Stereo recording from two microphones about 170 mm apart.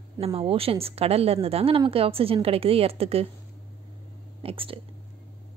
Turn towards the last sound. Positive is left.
turn(degrees=-30)  # may be behind; listen again after turning